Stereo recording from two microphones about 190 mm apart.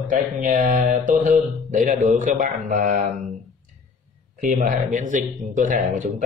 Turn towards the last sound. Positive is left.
turn(degrees=-45)  # may be behind; listen again after turning